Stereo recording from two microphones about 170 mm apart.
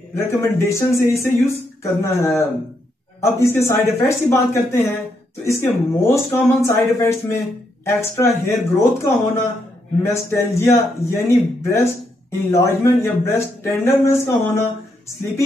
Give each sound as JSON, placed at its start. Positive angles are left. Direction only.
{"t": 0.1, "sound": "speech", "side_deg": 15}